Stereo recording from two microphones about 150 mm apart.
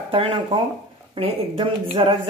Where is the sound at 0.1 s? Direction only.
35° right (ahead or behind).